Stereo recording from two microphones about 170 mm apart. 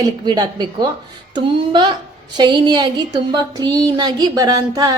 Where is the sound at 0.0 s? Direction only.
25° right (ahead or behind).